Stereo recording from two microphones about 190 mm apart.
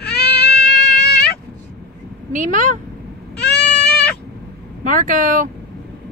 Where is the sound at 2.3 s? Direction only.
45° right (ahead or behind).